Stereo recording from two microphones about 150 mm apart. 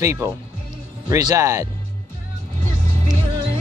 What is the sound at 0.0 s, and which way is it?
Speech, 20° right (ahead or behind).